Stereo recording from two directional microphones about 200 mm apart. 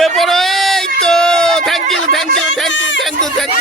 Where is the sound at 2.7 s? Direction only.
70° left (ahead or behind).